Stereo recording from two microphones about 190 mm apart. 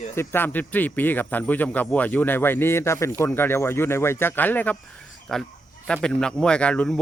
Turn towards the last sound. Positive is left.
turn(degrees=5)  # may be behind; listen again after turning